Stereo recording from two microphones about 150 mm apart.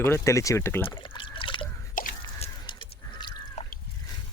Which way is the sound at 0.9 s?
35° left (ahead or behind).